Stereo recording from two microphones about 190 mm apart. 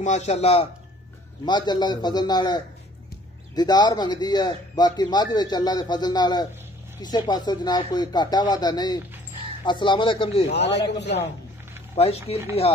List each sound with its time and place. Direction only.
0.0 s a man's voice: 35° left (ahead or behind)
1.4 s speech: 25° left (ahead or behind)
10.5 s a man's voice: 65° left (ahead or behind)
11.9 s a man's voice: 35° left (ahead or behind)